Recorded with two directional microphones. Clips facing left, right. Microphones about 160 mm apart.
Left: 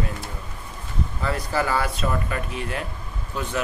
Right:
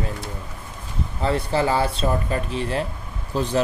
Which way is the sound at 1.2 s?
25° right (ahead or behind).